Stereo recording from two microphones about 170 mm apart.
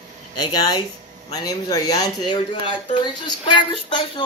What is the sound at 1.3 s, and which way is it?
Speech, 25° left (ahead or behind).